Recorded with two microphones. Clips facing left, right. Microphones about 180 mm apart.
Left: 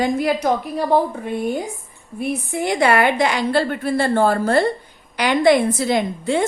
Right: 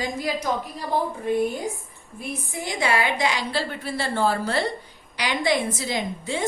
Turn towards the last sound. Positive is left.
turn(degrees=60)  # may be behind; listen again after turning